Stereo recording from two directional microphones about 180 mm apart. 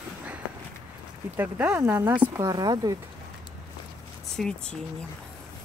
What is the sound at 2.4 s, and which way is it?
Speech, 20° right (ahead or behind).